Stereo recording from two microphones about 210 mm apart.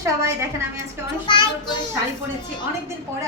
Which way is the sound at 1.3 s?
20° left (ahead or behind).